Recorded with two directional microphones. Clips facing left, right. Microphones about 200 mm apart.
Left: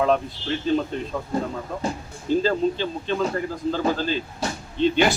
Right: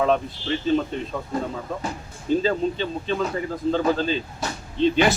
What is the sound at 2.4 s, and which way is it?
Speech, centre (ahead or behind).